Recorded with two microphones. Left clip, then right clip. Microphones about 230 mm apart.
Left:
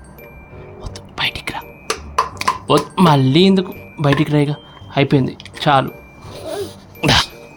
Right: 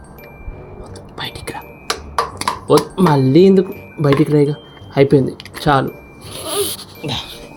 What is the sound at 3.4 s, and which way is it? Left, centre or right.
Speech, centre.